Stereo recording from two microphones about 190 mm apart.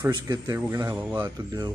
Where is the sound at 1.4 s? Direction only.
20° right (ahead or behind).